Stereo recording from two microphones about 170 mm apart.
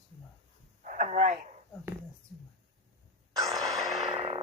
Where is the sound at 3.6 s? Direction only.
20° right (ahead or behind).